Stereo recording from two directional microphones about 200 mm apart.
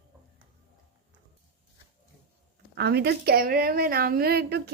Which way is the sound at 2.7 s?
55° right (ahead or behind).